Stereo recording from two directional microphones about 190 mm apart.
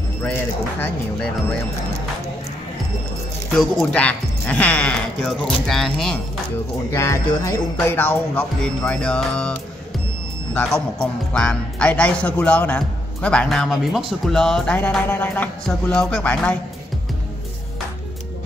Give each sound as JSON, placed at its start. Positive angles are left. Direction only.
{"t": 0.2, "sound": "speech", "side_deg": 10}
{"t": 3.5, "sound": "a man's voice", "side_deg": 0}
{"t": 6.9, "sound": "a man's voice", "side_deg": 15}